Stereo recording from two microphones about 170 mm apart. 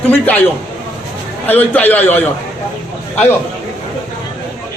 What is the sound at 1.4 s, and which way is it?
Speech, 10° left (ahead or behind).